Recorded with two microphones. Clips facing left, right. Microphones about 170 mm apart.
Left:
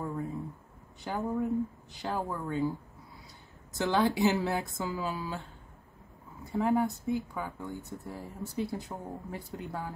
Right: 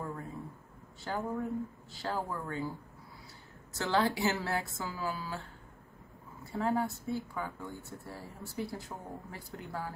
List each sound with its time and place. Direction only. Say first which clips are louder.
1.0 s speech: left 4 dB; 20° left (ahead or behind)
3.7 s speech: left 3 dB; 15° left (ahead or behind)
6.5 s speech: left 4 dB; 20° left (ahead or behind)